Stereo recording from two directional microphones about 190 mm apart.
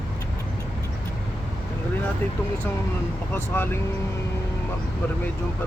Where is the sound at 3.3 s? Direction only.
10° left (ahead or behind).